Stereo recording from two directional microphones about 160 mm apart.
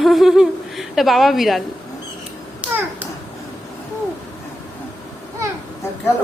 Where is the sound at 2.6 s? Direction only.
10° right (ahead or behind).